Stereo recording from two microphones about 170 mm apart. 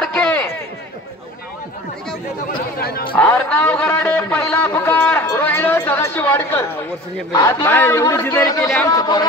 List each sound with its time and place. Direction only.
0.0 s a sound: 5° left (ahead or behind)
2.8 s speech: 65° left (ahead or behind)
3.2 s a man's voice: 10° left (ahead or behind)
7.3 s a man's voice: 20° left (ahead or behind)